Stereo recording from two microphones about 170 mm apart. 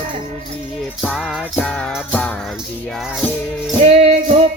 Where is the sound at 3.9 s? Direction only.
40° right (ahead or behind).